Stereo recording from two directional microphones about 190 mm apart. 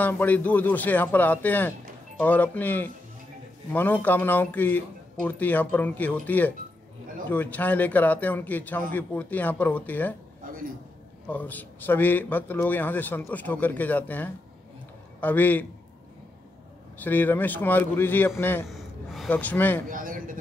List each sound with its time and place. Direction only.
0.0 s a man's voice: 10° left (ahead or behind)
11.2 s a man's voice: 10° left (ahead or behind)
17.0 s a man's voice: 10° left (ahead or behind)
18.7 s a man's voice: centre (ahead or behind)
19.9 s a sound: 45° right (ahead or behind)